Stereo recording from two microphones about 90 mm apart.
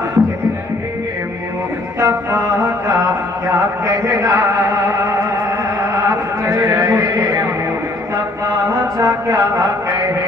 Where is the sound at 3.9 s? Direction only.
35° right (ahead or behind).